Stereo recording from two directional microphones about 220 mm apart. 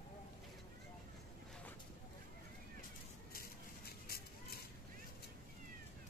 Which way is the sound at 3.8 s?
45° left (ahead or behind).